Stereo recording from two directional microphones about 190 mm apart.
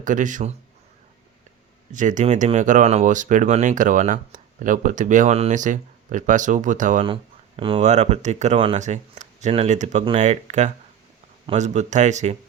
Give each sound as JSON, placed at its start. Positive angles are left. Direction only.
{"t": 0.0, "sound": "a man's voice", "side_deg": -40}
{"t": 1.9, "sound": "speech", "side_deg": -40}
{"t": 7.0, "sound": "speech", "side_deg": -30}